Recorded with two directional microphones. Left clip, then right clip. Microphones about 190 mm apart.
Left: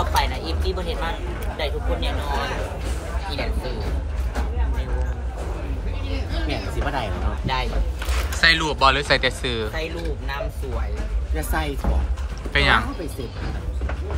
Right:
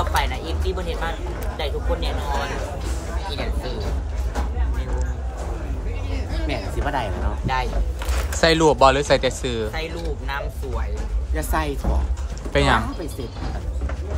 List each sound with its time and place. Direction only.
0.1 s a sound: centre (ahead or behind)
1.6 s speech: 5° right (ahead or behind)
6.5 s speech: 5° right (ahead or behind)
8.4 s speech: 30° right (ahead or behind)
9.8 s a woman's voice: centre (ahead or behind)
12.5 s speech: 25° right (ahead or behind)